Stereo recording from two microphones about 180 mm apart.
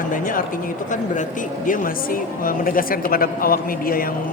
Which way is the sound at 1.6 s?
50° left (ahead or behind).